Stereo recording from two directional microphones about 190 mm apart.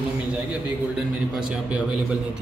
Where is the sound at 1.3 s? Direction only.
5° right (ahead or behind).